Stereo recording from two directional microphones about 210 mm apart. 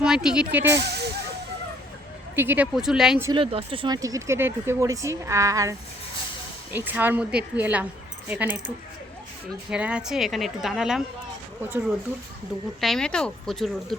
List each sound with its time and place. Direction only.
0.0 s a woman's voice: 5° right (ahead or behind)
0.8 s speech: 50° right (ahead or behind)
2.3 s a woman's voice: 10° right (ahead or behind)
3.2 s speech: 25° right (ahead or behind)
6.7 s speech: 10° right (ahead or behind)
9.6 s a woman's voice: 5° right (ahead or behind)
12.8 s a woman's voice: centre (ahead or behind)